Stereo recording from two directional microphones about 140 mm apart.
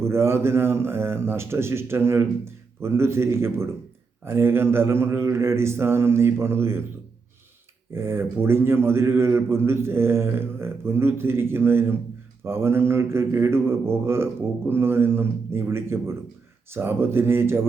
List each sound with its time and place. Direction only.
0.0 s a man's voice: 20° right (ahead or behind)
7.9 s a man's voice: 15° right (ahead or behind)